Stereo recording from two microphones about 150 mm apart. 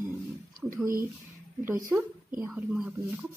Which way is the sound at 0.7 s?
15° right (ahead or behind).